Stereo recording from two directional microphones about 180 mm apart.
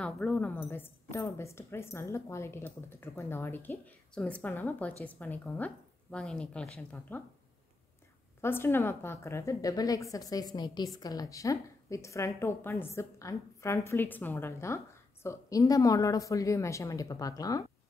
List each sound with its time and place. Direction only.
0.0 s a woman's voice: 5° left (ahead or behind)
8.4 s a woman's voice: 15° left (ahead or behind)